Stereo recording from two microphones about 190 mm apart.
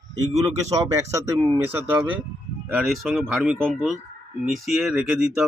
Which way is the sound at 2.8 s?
Centre (ahead or behind).